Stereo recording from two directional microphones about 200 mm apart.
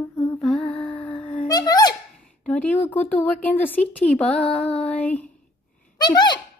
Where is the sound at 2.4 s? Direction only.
10° left (ahead or behind).